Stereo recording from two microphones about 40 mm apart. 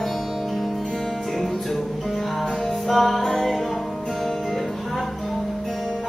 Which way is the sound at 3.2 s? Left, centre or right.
Centre.